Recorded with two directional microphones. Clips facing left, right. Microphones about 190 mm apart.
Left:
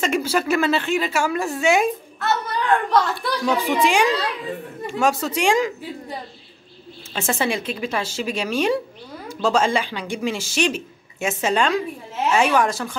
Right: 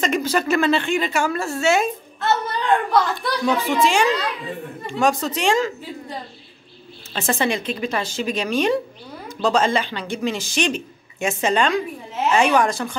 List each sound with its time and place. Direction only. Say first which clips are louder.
0.0 s speech: even; 5° left (ahead or behind)
2.1 s a sound: right 1 dB; 25° right (ahead or behind)
2.9 s a child's voice: even; 5° left (ahead or behind)
3.6 s speech: left 1 dB; 15° left (ahead or behind)
7.2 s a child's voice: right 1 dB; 5° left (ahead or behind)